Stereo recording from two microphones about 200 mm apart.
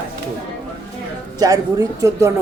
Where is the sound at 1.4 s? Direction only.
15° right (ahead or behind).